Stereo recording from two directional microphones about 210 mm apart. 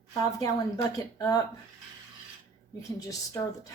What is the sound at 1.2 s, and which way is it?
Speech, 15° left (ahead or behind).